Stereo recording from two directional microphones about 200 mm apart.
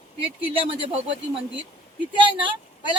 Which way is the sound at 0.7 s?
25° right (ahead or behind).